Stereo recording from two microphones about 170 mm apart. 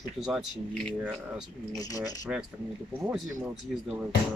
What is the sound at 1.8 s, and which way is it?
Speech, 20° left (ahead or behind).